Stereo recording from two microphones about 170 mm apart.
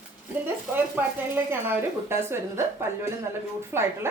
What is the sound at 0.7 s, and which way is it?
A woman's voice, 10° right (ahead or behind).